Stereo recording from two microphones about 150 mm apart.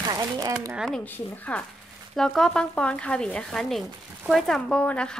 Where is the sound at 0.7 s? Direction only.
5° left (ahead or behind).